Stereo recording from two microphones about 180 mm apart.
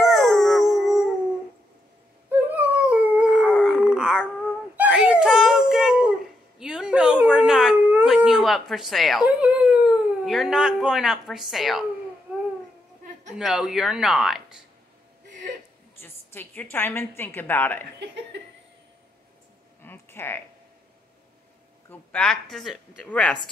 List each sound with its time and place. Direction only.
0.0 s howl: centre (ahead or behind)
2.5 s dog: 10° right (ahead or behind)
4.7 s wail: 5° right (ahead or behind)
6.6 s howl: 5° right (ahead or behind)
13.4 s speech: 5° right (ahead or behind)
16.0 s a woman's voice: 10° left (ahead or behind)
17.9 s laughter: 75° right (ahead or behind)
19.8 s a sound: 10° left (ahead or behind)
21.8 s speech: 5° left (ahead or behind)